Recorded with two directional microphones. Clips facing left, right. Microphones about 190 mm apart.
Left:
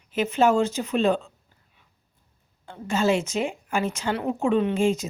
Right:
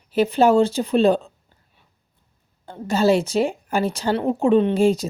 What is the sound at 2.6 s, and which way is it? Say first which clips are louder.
A woman's voice: right 5 dB; 35° right (ahead or behind).